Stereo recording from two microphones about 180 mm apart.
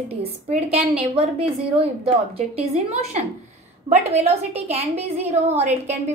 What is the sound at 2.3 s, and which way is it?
A woman's voice, 35° right (ahead or behind).